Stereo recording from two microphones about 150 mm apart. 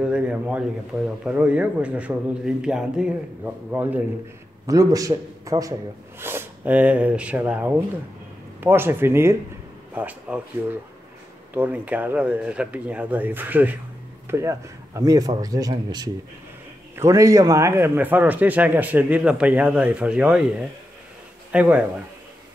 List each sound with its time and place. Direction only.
0.0 s a man's voice: 5° right (ahead or behind)
4.6 s a man's voice: 20° right (ahead or behind)